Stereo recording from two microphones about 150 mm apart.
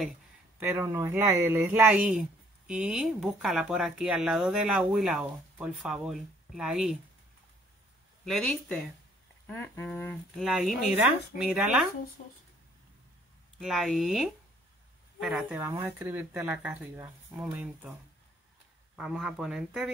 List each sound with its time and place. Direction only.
0.6 s speech: 15° right (ahead or behind)
8.3 s speech: 5° left (ahead or behind)
13.6 s speech: 5° right (ahead or behind)
15.6 s speech: 15° right (ahead or behind)
18.9 s speech: 5° right (ahead or behind)